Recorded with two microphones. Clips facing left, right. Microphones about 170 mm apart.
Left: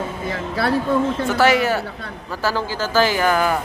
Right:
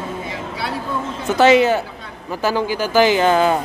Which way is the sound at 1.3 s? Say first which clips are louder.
Right 6 dB; 20° right (ahead or behind).